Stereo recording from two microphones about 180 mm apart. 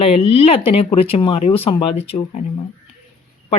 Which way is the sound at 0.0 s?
35° left (ahead or behind).